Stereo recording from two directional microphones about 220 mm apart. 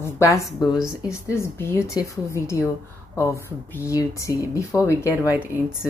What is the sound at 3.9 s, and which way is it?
Speech, 15° left (ahead or behind).